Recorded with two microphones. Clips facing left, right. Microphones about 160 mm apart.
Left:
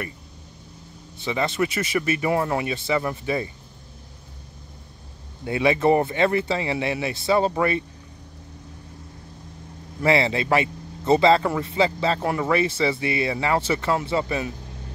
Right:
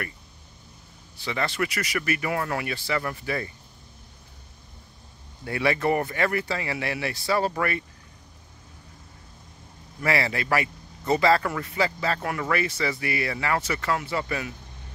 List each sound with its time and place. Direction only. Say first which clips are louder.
1.1 s a man's voice: left 4 dB; 20° left (ahead or behind)
5.4 s a man's voice: left 5 dB; 20° left (ahead or behind)
10.0 s a man's voice: left 5 dB; 25° left (ahead or behind)